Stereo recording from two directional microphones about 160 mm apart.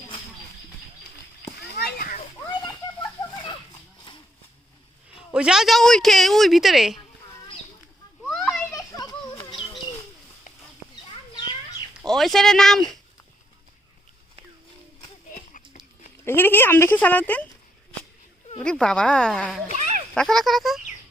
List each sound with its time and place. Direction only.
1.5 s a sound: 80° left
3.0 s a sound: 30° left (ahead or behind)
5.3 s a woman's voice: 5° right (ahead or behind)
8.2 s children playing: centre (ahead or behind)
8.7 s children playing: 25° left (ahead or behind)
9.4 s bird: 35° left (ahead or behind)
12.0 s a woman's voice: centre (ahead or behind)
15.4 s a sound: 50° left (ahead or behind)
16.2 s speech: 15° left (ahead or behind)
18.6 s a woman's voice: 5° left (ahead or behind)
19.7 s a sound: 50° right (ahead or behind)
20.1 s a woman's voice: centre (ahead or behind)